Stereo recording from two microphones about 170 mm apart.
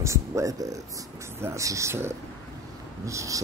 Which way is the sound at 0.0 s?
20° right (ahead or behind).